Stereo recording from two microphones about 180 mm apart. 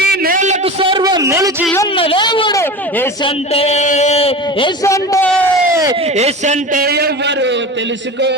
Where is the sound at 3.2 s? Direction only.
30° left (ahead or behind).